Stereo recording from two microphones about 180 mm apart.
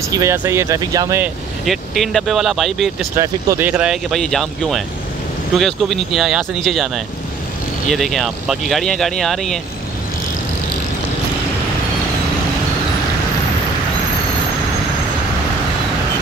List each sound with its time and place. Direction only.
0.1 s speech: 15° right (ahead or behind)
1.2 s speech: centre (ahead or behind)
3.2 s speech: 15° right (ahead or behind)
7.9 s speech: centre (ahead or behind)